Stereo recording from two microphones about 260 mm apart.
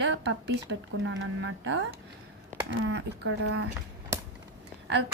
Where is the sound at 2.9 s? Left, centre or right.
Right.